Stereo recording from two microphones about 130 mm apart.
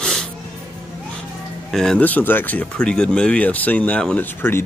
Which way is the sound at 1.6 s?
5° left (ahead or behind).